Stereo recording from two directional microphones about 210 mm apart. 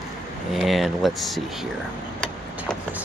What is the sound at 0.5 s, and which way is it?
Speech, centre (ahead or behind).